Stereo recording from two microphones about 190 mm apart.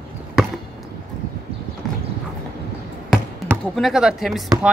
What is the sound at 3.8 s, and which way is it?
Speech, 5° right (ahead or behind).